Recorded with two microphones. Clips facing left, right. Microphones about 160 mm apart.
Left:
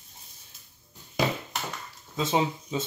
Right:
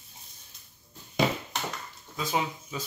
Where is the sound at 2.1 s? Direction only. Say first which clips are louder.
Left 4 dB; 25° left (ahead or behind).